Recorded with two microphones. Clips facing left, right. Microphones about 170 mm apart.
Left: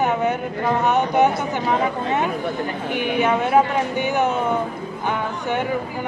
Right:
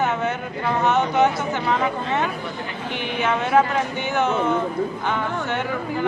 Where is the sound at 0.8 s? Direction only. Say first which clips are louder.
Even; 15° left (ahead or behind).